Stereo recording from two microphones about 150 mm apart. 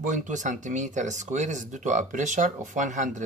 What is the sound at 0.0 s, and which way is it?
Speech, 55° right (ahead or behind).